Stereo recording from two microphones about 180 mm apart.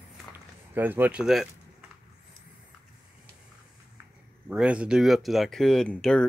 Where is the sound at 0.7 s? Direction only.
10° right (ahead or behind).